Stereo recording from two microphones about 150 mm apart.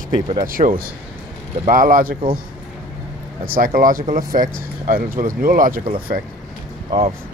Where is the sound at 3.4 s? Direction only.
70° right (ahead or behind).